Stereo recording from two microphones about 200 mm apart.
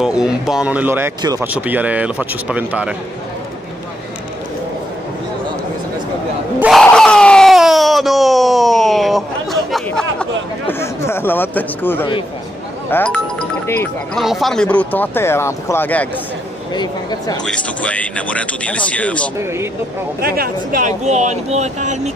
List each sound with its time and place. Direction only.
0.0 s speech: 5° right (ahead or behind)
6.6 s crowd: centre (ahead or behind)
10.7 s speech: 10° left (ahead or behind)
14.2 s speech: centre (ahead or behind)
16.7 s speech: 20° left (ahead or behind)
17.5 s speech: 5° left (ahead or behind)
20.2 s speech: 50° right (ahead or behind)